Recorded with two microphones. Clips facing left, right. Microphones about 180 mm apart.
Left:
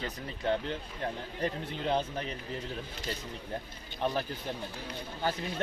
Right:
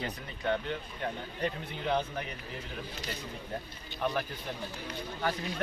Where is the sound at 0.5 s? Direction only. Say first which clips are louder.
Even; 30° left (ahead or behind).